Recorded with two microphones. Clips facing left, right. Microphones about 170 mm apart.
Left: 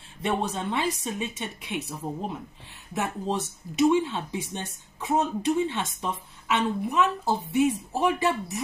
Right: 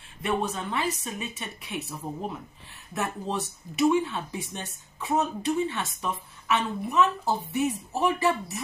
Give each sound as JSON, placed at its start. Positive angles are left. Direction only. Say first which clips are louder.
{"t": 0.2, "sound": "a woman's voice", "louder": "left 1 dB", "side_deg": 25}